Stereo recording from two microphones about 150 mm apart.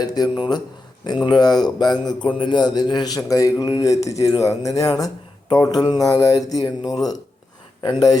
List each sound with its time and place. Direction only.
0.0 s a man's voice: 25° left (ahead or behind)